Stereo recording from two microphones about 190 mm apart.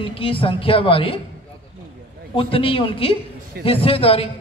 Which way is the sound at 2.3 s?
30° left (ahead or behind).